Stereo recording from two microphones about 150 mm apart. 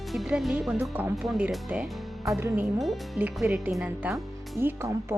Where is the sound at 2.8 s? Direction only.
Centre (ahead or behind); by 5.2 s 15° right (ahead or behind).